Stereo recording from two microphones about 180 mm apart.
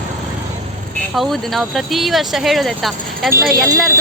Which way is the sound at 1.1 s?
Centre (ahead or behind).